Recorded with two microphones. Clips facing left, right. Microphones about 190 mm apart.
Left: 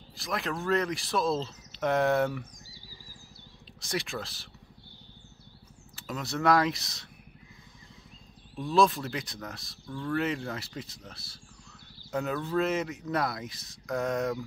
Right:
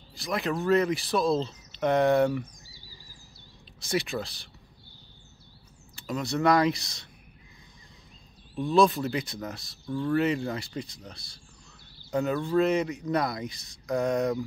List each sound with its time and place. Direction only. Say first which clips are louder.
0.1 s speech: right 4 dB; centre (ahead or behind)
3.8 s speech: right 5 dB; centre (ahead or behind)
5.9 s speech: right 5 dB; centre (ahead or behind)
8.5 s speech: right 3 dB; centre (ahead or behind)
9.8 s speech: right 6 dB; 15° right (ahead or behind)
10.1 s speech: right 4 dB; centre (ahead or behind)